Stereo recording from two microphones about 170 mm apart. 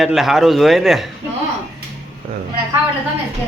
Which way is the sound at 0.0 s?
Centre (ahead or behind).